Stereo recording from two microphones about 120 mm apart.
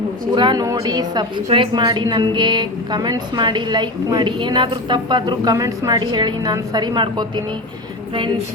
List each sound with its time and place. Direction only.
0.3 s a woman's voice: 40° right (ahead or behind)
0.6 s a woman's voice: 30° right (ahead or behind)
1.5 s a woman's voice: 45° right (ahead or behind)